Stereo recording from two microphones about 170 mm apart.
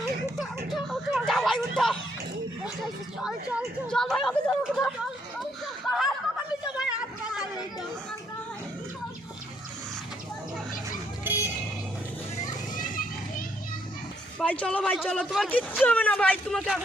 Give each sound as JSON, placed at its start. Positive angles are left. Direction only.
{"t": 0.0, "sound": "a sound", "side_deg": 0}
{"t": 3.2, "sound": "speech", "side_deg": -5}
{"t": 5.4, "sound": "a sound", "side_deg": 0}
{"t": 12.7, "sound": "children playing", "side_deg": 55}
{"t": 14.3, "sound": "speech", "side_deg": 5}
{"t": 15.8, "sound": "speech", "side_deg": 10}